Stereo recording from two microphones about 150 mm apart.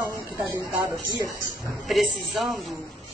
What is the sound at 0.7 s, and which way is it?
Speech, 20° right (ahead or behind).